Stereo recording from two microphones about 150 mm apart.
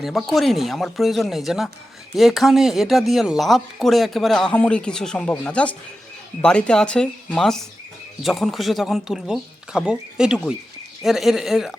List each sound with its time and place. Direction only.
0.0 s speech: centre (ahead or behind)